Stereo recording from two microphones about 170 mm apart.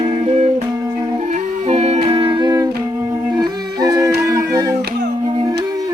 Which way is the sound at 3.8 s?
20° right (ahead or behind).